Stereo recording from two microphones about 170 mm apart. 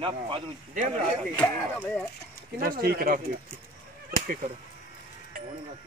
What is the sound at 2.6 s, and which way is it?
Speech, 60° right (ahead or behind).